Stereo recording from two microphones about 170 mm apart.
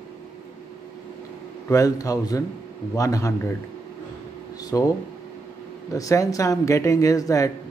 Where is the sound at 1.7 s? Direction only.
20° left (ahead or behind).